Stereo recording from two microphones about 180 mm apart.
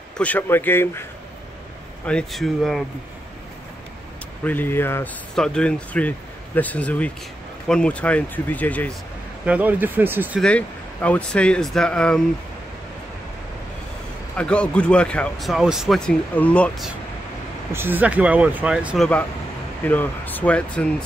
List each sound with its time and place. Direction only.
0.2 s speech: 10° left (ahead or behind)
2.0 s speech: 5° left (ahead or behind)
4.5 s speech: 10° left (ahead or behind)
9.5 s speech: 10° right (ahead or behind)
10.4 s speech: 5° left (ahead or behind)
14.3 s speech: 5° left (ahead or behind)
17.7 s speech: 10° right (ahead or behind)
19.8 s speech: 10° left (ahead or behind)